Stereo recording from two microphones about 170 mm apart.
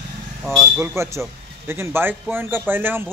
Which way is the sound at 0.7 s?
15° right (ahead or behind).